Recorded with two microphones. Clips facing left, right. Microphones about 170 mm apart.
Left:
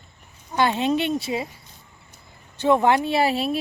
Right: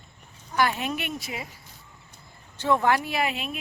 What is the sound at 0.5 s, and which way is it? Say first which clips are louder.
Speech: left 5 dB; 25° left (ahead or behind).